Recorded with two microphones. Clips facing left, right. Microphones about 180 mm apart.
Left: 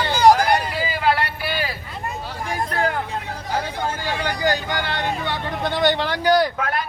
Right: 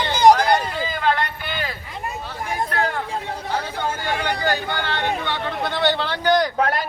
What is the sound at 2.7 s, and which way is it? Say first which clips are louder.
Vehicle: left 2 dB; 5° left (ahead or behind).